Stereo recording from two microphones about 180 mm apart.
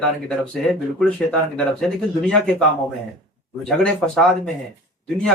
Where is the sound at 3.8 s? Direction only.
5° left (ahead or behind).